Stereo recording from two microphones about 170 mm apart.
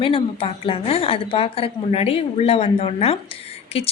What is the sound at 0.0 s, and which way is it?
A woman's voice, 30° left (ahead or behind).